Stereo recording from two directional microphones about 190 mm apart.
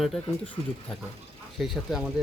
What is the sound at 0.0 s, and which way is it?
Speech, centre (ahead or behind).